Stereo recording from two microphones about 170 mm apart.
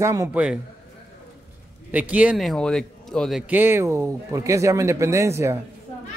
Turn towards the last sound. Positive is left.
turn(degrees=-15)  # may be behind; listen again after turning